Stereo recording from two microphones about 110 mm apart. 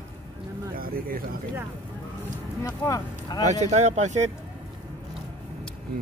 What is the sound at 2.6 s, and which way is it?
Speech, 30° left (ahead or behind).